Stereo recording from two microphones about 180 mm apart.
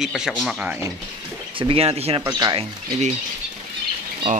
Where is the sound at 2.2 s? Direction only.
20° right (ahead or behind).